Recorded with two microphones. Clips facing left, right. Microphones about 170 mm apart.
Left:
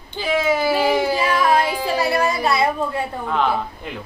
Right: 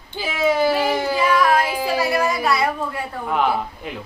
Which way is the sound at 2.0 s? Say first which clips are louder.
Left 2 dB; 25° left (ahead or behind).